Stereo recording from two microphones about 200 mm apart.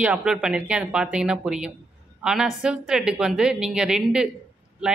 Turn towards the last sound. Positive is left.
turn(degrees=-5)  # may be behind; listen again after turning